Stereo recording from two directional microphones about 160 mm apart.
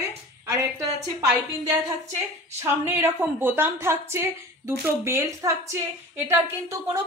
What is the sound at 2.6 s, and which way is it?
A woman's voice, 15° right (ahead or behind).